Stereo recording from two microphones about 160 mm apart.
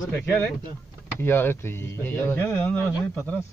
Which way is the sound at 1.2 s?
15° left (ahead or behind).